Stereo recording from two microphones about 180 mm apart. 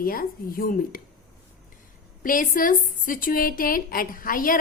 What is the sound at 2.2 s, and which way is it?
A woman's voice, 50° left (ahead or behind).